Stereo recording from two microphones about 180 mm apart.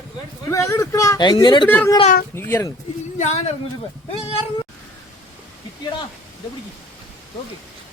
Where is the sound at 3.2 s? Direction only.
40° left (ahead or behind).